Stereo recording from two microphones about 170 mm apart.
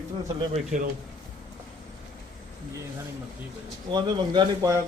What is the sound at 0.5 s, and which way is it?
Speech, 45° right (ahead or behind).